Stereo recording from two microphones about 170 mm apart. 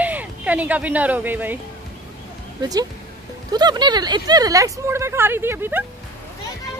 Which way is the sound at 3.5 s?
25° right (ahead or behind).